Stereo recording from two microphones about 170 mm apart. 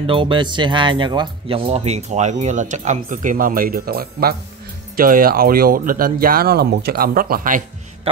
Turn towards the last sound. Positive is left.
turn(degrees=-55)  # may be behind; listen again after turning